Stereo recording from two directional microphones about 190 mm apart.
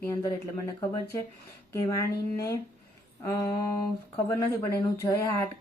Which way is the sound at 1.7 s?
15° left (ahead or behind).